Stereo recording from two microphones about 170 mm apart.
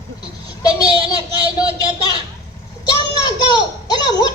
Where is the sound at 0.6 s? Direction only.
20° left (ahead or behind).